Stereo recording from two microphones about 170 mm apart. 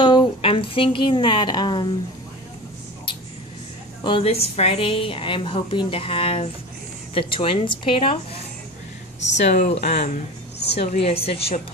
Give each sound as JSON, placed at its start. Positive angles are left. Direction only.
{"t": 0.0, "sound": "a woman's voice", "side_deg": 25}
{"t": 4.0, "sound": "a woman's voice", "side_deg": 30}
{"t": 9.4, "sound": "a woman's voice", "side_deg": 40}